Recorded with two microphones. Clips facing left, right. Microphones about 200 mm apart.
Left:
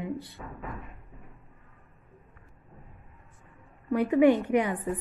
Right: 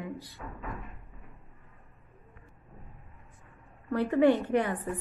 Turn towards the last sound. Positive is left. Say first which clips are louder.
# left 2 dB
turn(degrees=15)  # may be behind; listen again after turning